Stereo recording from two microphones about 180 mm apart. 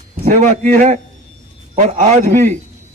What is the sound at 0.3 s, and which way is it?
A man's voice, 45° right (ahead or behind).